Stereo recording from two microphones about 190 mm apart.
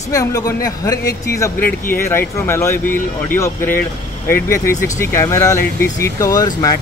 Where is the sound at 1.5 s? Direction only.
50° left (ahead or behind).